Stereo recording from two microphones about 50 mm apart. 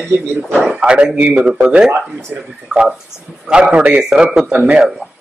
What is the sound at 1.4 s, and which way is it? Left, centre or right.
Speech, centre.